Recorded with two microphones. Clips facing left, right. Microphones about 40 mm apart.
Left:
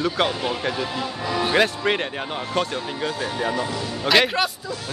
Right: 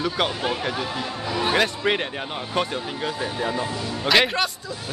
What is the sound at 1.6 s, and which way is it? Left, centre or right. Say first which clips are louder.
A man's voice: left 3 dB; centre.